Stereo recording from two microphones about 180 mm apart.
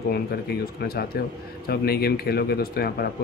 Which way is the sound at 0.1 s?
65° left (ahead or behind).